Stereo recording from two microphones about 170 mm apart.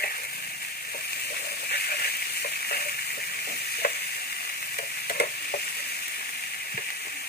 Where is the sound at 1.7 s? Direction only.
65° left (ahead or behind).